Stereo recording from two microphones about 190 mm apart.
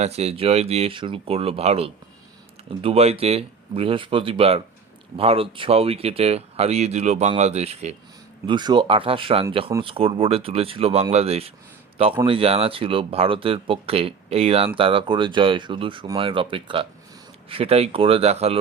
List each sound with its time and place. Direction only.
0.0 s speech: 35° right (ahead or behind)
8.4 s speech: 25° right (ahead or behind)